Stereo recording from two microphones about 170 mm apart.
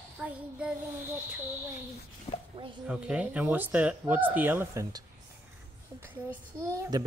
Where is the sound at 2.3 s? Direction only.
35° left (ahead or behind).